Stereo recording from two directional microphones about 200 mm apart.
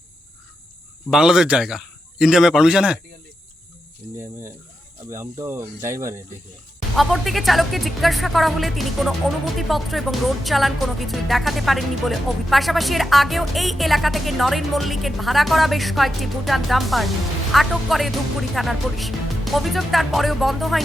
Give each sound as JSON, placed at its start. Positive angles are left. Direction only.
{"t": 1.1, "sound": "speech", "side_deg": -5}
{"t": 5.1, "sound": "speech", "side_deg": -15}
{"t": 6.9, "sound": "speech", "side_deg": 0}